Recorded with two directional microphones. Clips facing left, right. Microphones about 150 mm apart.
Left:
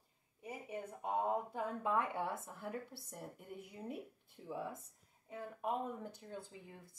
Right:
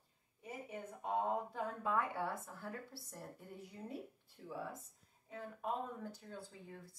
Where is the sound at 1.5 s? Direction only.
20° left (ahead or behind).